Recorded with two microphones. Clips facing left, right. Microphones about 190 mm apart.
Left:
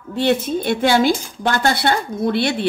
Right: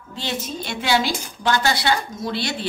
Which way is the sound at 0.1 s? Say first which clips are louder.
Left 11 dB; 60° left (ahead or behind).